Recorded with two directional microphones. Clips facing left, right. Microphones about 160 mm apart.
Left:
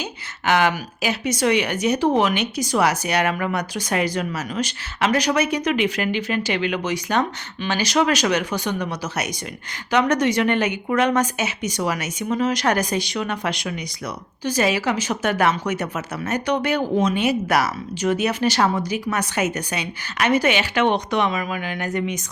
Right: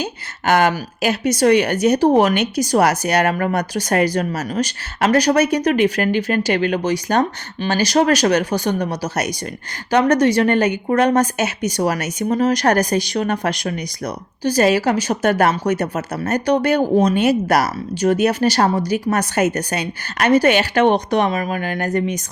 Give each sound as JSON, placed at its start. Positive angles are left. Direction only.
{"t": 0.0, "sound": "a woman's voice", "side_deg": -45}